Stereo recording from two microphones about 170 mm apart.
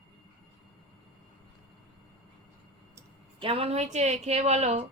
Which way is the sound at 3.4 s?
35° right (ahead or behind).